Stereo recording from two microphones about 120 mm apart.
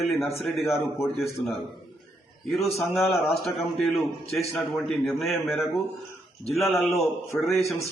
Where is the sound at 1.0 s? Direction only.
Centre (ahead or behind).